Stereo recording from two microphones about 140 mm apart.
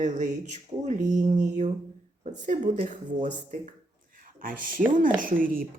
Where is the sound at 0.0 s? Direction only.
60° right (ahead or behind).